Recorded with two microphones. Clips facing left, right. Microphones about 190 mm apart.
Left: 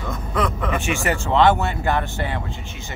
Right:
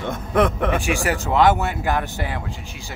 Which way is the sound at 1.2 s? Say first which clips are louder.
Left 1 dB; 10° right (ahead or behind).